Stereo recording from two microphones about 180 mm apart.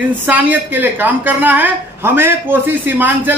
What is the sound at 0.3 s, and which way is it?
A woman's voice, 10° right (ahead or behind).